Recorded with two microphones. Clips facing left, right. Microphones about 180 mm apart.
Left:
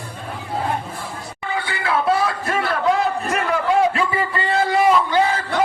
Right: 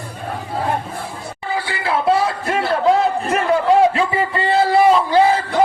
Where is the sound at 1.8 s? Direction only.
30° right (ahead or behind).